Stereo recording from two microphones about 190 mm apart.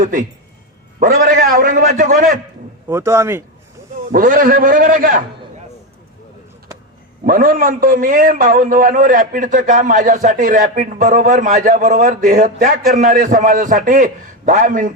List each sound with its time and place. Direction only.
0.0 s a man's voice: 45° right (ahead or behind)
2.8 s a man's voice: 15° right (ahead or behind)
4.1 s a man's voice: 45° right (ahead or behind)
7.3 s a man's voice: 45° right (ahead or behind)